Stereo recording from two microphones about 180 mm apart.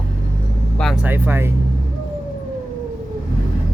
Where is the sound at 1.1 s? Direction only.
10° right (ahead or behind).